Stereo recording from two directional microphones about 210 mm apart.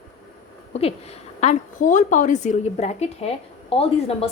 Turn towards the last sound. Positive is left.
turn(degrees=30)  # may be behind; listen again after turning